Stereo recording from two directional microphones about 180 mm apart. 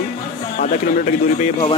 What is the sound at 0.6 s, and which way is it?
Speech, 45° left (ahead or behind).